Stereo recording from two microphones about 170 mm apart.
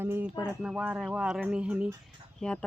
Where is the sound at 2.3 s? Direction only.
5° left (ahead or behind).